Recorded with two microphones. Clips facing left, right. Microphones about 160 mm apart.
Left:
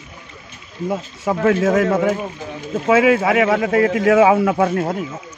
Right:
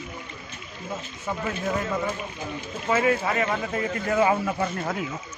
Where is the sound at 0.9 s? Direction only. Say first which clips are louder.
Left 10 dB; 90° left; by 4.9 s 70° left (ahead or behind).